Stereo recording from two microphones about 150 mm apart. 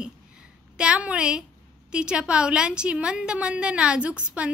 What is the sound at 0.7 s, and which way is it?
A woman's voice, 5° right (ahead or behind).